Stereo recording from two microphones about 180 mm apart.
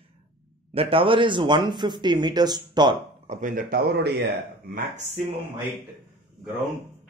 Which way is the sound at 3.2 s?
50° right (ahead or behind).